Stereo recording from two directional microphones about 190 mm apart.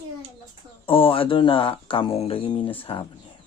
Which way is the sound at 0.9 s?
30° left (ahead or behind).